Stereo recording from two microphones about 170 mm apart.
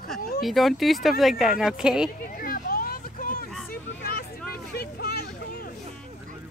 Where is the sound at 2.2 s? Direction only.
55° left (ahead or behind).